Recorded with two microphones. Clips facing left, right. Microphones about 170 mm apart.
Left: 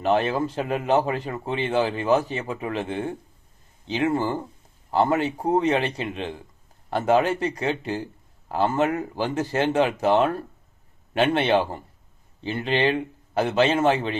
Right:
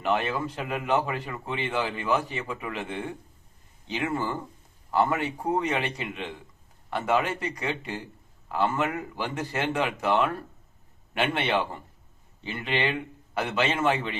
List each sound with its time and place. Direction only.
0.0 s speech: 35° left (ahead or behind)